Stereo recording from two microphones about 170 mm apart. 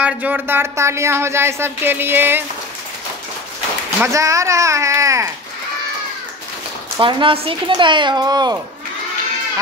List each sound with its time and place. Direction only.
0.0 s speech: 10° right (ahead or behind)
4.0 s speech: 20° right (ahead or behind)
7.0 s a woman's voice: 30° right (ahead or behind)